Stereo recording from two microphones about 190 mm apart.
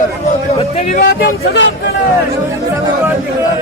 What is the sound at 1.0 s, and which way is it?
Speech, 60° left (ahead or behind).